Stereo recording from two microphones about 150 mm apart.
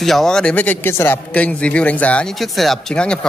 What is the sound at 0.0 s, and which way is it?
A man's voice, centre (ahead or behind).